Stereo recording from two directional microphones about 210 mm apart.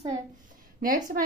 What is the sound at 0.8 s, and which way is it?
Speech, 40° right (ahead or behind).